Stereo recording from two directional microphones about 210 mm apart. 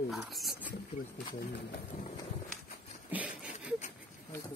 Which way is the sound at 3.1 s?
5° right (ahead or behind).